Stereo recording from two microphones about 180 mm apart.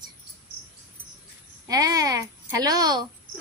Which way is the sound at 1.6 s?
20° right (ahead or behind).